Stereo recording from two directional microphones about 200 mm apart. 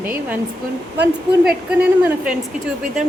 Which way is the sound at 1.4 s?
5° right (ahead or behind).